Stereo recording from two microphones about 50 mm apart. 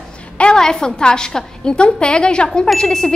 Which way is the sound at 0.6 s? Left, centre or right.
Centre.